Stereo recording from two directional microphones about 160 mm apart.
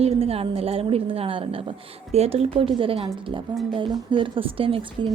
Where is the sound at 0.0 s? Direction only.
40° right (ahead or behind).